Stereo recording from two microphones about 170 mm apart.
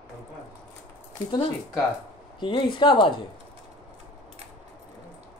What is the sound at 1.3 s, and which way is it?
Speech, 25° left (ahead or behind).